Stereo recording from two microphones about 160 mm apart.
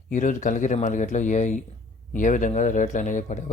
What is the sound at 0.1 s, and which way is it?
Speech, 50° left (ahead or behind).